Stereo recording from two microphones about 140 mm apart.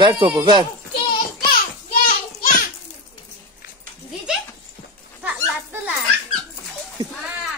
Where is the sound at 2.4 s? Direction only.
80° left.